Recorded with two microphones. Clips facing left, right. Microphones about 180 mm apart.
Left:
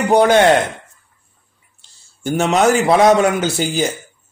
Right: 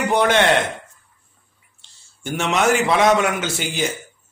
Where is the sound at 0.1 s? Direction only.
35° left (ahead or behind).